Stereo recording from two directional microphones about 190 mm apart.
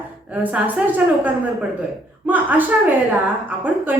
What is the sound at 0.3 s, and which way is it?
A woman's voice, 10° right (ahead or behind).